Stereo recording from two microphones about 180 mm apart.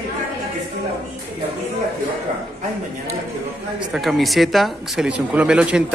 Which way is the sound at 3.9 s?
Centre (ahead or behind).